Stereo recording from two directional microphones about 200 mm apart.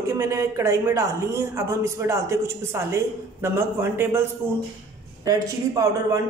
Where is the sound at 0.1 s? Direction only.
15° right (ahead or behind).